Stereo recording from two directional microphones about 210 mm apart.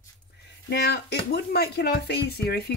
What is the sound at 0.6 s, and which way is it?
Speech, 50° left (ahead or behind).